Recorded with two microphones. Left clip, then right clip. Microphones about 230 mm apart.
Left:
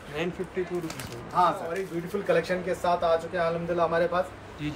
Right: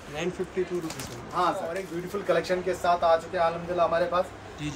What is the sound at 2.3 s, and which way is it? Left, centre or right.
Speech, centre.